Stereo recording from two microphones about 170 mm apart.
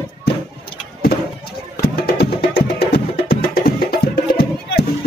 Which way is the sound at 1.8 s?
65° left (ahead or behind).